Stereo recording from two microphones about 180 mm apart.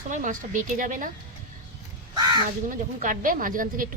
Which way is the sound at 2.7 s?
50° right (ahead or behind).